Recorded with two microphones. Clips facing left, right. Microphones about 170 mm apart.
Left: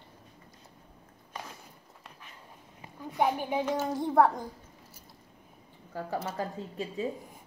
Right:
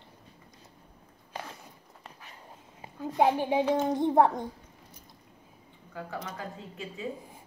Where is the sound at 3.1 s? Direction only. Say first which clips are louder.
Right 4 dB; 25° right (ahead or behind).